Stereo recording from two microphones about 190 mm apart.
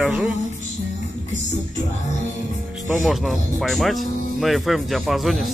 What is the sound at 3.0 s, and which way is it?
Speech, centre (ahead or behind).